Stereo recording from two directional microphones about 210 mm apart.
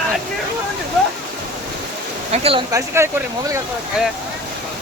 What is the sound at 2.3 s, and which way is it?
Speech, 30° right (ahead or behind).